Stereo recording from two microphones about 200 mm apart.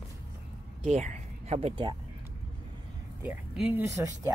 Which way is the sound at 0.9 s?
35° right (ahead or behind).